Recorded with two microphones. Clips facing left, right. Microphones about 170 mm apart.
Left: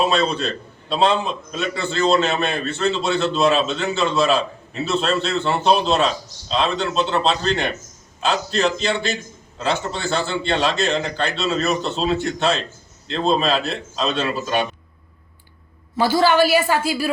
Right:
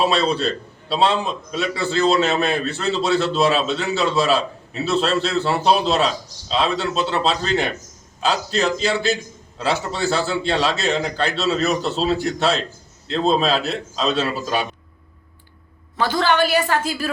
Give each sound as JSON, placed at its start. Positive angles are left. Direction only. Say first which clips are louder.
{"t": 0.2, "sound": "a man's voice", "louder": "right 1 dB", "side_deg": 0}
{"t": 16.0, "sound": "a woman's voice", "louder": "left 3 dB", "side_deg": 5}